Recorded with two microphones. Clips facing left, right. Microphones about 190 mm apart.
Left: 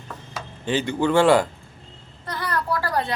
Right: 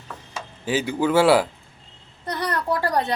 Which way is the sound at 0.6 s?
5° right (ahead or behind).